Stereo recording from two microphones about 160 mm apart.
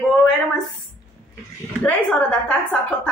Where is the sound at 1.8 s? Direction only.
10° left (ahead or behind).